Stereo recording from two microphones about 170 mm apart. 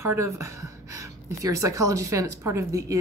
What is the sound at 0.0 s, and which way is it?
A woman's voice, 15° right (ahead or behind).